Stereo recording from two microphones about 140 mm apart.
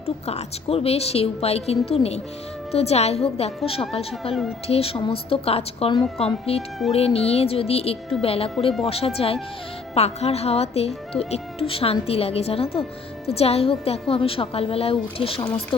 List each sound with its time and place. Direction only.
0.0 s speech: 45° left (ahead or behind)